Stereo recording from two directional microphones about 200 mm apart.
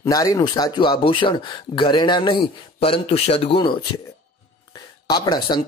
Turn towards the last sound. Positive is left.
turn(degrees=20)  # may be behind; listen again after turning